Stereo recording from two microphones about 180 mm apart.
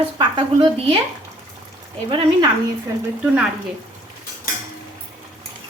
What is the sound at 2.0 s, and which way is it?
Speech, 25° right (ahead or behind).